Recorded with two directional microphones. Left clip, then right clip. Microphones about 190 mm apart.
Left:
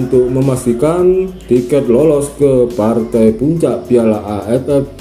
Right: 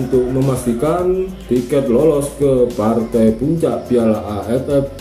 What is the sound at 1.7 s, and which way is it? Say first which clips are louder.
Speech: left 2 dB; 30° left (ahead or behind).